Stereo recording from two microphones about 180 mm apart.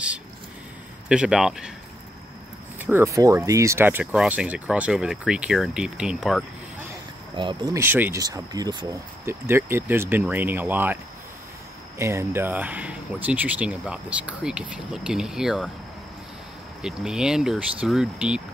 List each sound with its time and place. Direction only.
1.0 s speech: 5° right (ahead or behind)
2.8 s speech: 15° right (ahead or behind)
7.3 s speech: 25° right (ahead or behind)
7.8 s speech: 10° right (ahead or behind)
12.0 s speech: 15° right (ahead or behind)
16.8 s speech: 5° right (ahead or behind)